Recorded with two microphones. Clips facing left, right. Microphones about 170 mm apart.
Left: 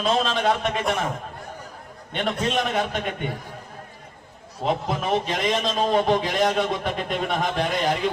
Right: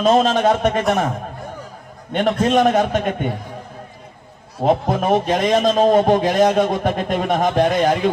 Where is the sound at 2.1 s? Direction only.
45° right (ahead or behind).